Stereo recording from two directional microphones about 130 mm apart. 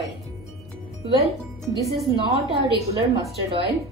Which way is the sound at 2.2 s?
40° right (ahead or behind).